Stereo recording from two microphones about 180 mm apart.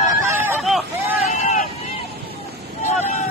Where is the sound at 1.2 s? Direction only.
40° left (ahead or behind).